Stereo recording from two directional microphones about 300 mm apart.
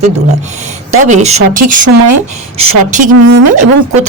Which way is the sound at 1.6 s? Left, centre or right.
Right.